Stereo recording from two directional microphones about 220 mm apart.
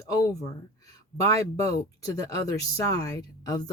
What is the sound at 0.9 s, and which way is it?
Speech, 15° left (ahead or behind).